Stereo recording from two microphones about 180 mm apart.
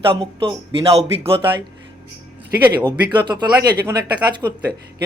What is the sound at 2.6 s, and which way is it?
Speech, 25° right (ahead or behind).